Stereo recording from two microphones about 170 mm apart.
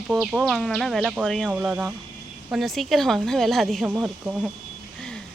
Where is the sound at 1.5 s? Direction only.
10° right (ahead or behind).